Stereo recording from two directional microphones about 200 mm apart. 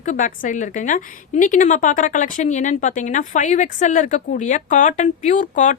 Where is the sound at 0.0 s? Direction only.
40° left (ahead or behind).